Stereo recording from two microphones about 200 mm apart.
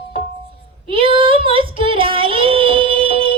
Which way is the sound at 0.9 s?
25° right (ahead or behind).